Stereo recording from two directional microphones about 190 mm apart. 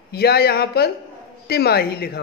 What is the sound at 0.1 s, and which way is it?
Speech, 55° left (ahead or behind).